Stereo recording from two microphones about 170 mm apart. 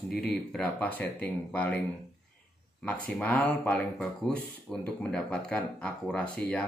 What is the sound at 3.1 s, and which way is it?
Speech, 5° left (ahead or behind).